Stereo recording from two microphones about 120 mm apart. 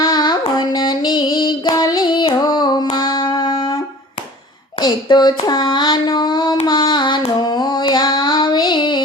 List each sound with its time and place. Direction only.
0.0 s music: 35° left (ahead or behind)
4.8 s a sound: 35° left (ahead or behind)
6.7 s female singing: 40° left (ahead or behind)